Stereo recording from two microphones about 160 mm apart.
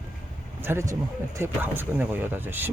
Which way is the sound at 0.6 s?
15° right (ahead or behind).